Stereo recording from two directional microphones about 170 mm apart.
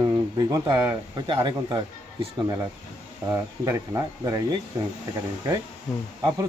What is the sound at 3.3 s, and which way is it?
Speech, 15° right (ahead or behind).